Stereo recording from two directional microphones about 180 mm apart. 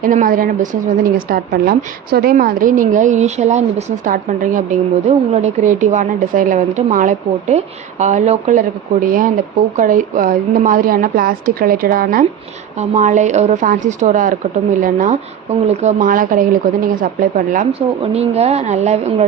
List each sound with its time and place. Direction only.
0.0 s a woman's voice: 45° right (ahead or behind)
12.7 s a woman's voice: 40° right (ahead or behind)
17.7 s speech: 35° right (ahead or behind)